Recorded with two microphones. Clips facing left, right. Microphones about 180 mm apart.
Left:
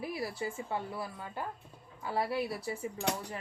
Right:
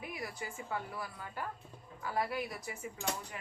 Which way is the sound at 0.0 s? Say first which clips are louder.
Left 6 dB; 30° left (ahead or behind).